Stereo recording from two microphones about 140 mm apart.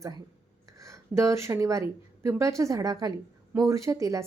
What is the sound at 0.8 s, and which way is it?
A woman's voice, 20° right (ahead or behind).